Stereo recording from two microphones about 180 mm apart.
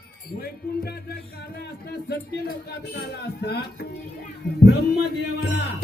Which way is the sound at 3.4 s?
65° left (ahead or behind).